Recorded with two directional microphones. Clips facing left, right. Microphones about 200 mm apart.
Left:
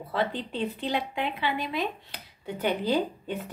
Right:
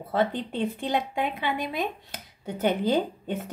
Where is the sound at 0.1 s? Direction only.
50° right (ahead or behind).